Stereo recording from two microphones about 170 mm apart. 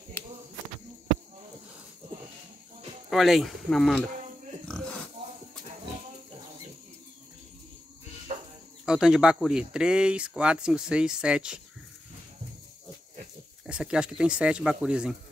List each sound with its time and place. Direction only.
3.1 s speech: centre (ahead or behind)
4.6 s pig: 5° left (ahead or behind)
8.3 s cricket: 45° right (ahead or behind)
8.8 s speech: 5° right (ahead or behind)
13.7 s speech: 5° right (ahead or behind)